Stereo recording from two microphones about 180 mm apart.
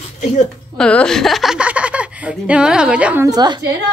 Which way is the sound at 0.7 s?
5° left (ahead or behind).